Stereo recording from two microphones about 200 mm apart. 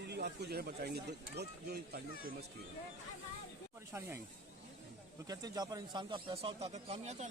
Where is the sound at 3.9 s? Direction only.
15° right (ahead or behind).